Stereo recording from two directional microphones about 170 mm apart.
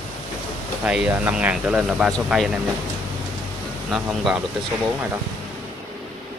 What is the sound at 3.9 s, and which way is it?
Speech, centre (ahead or behind).